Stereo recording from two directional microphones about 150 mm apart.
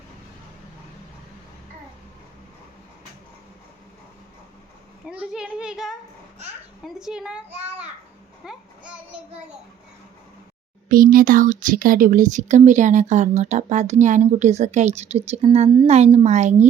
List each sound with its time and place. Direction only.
5.0 s a child's voice: 5° right (ahead or behind)
8.4 s child singing: 10° right (ahead or behind)
10.8 s speech: 70° right (ahead or behind); by 16.6 s 50° right (ahead or behind)